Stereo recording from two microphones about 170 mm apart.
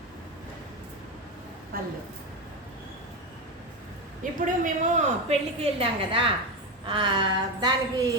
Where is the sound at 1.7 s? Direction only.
60° right (ahead or behind).